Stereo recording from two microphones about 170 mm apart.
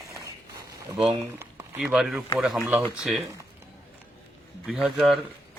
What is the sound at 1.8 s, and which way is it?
Speech, 5° right (ahead or behind).